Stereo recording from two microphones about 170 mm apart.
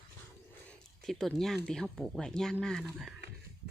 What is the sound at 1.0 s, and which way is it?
Speech, centre (ahead or behind).